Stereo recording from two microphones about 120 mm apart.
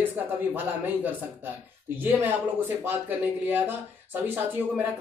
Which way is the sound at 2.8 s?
15° right (ahead or behind).